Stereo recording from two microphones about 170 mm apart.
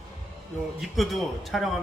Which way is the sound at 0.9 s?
Centre (ahead or behind).